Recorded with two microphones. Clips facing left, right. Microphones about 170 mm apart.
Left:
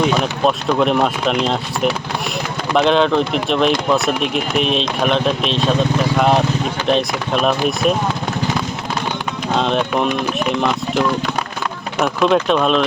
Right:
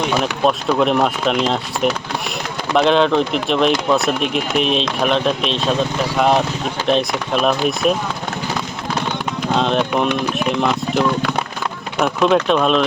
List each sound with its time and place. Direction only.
0.1 s speech: centre (ahead or behind)
9.5 s speech: centre (ahead or behind)